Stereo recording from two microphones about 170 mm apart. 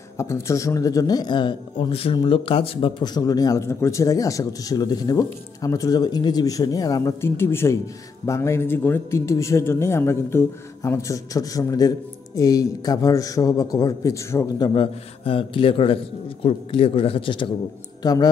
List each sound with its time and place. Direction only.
0.2 s a man's voice: 15° left (ahead or behind)
14.7 s a man's voice: 30° left (ahead or behind)